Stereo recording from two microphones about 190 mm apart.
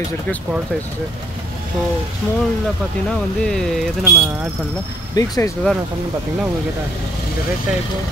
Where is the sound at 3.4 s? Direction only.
5° left (ahead or behind).